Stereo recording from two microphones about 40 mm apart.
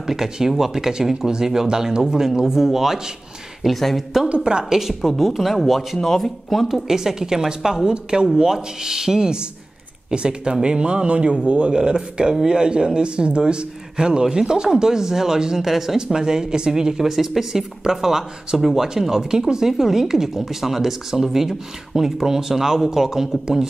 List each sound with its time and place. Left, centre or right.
0.0 s speech: centre
3.6 s speech: centre
4.3 s speech: right
5.0 s speech: centre
7.0 s speech: centre